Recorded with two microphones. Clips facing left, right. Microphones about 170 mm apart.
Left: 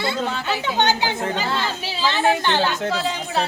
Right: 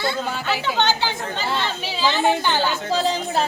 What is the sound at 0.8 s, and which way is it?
Speech, 20° left (ahead or behind).